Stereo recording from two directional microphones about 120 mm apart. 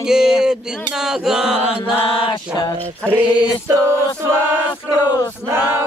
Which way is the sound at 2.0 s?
50° left (ahead or behind).